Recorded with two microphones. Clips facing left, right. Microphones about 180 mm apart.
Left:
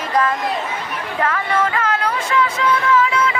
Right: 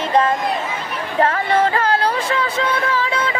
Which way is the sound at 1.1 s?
30° right (ahead or behind).